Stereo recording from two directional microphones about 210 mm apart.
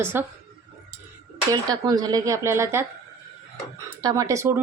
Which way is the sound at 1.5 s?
20° right (ahead or behind).